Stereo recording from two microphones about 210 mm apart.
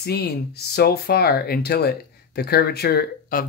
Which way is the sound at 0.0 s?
50° left (ahead or behind).